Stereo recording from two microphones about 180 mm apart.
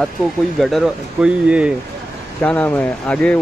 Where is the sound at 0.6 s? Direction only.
Centre (ahead or behind).